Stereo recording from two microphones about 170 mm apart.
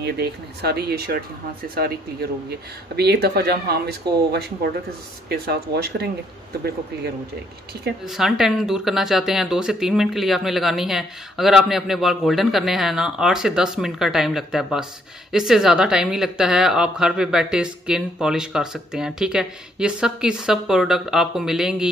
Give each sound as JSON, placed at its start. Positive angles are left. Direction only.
{"t": 0.0, "sound": "speech", "side_deg": -75}
{"t": 8.0, "sound": "speech", "side_deg": 0}